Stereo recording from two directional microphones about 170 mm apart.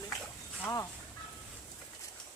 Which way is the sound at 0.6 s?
20° left (ahead or behind).